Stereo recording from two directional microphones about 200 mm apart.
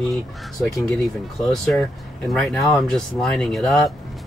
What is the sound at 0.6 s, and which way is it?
Speech, centre (ahead or behind).